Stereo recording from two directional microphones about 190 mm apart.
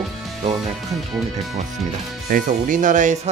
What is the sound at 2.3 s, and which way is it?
Speech, 45° right (ahead or behind).